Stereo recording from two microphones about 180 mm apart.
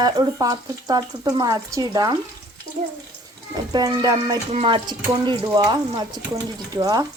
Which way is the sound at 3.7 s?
20° right (ahead or behind).